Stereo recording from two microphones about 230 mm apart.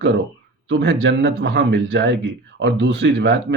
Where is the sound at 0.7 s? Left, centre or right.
Right.